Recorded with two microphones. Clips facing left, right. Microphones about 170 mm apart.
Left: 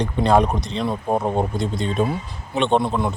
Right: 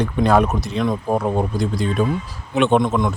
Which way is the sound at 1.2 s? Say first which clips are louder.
Right 1 dB; 25° left (ahead or behind).